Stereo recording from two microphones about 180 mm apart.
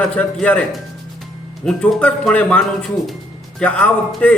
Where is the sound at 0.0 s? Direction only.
5° left (ahead or behind).